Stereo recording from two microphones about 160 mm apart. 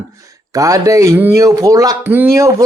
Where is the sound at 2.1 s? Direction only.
15° right (ahead or behind).